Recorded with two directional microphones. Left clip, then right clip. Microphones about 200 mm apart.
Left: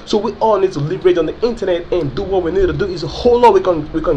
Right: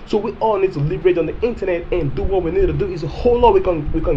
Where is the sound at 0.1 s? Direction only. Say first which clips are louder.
Left 4 dB; centre (ahead or behind).